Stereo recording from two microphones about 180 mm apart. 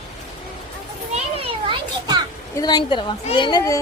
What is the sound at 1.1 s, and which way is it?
Children playing, 30° right (ahead or behind).